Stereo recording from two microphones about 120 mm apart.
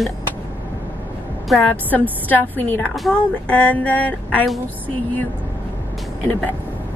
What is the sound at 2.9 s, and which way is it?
Speech, centre (ahead or behind).